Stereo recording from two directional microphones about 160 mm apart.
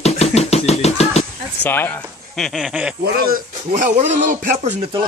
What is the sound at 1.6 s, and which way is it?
Speech, 15° left (ahead or behind).